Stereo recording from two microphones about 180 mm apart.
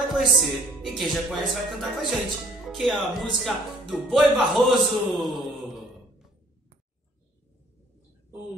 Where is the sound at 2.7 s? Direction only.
Centre (ahead or behind).